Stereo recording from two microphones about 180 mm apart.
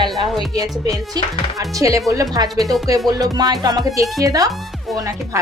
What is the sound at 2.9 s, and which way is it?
A woman's voice, 20° right (ahead or behind).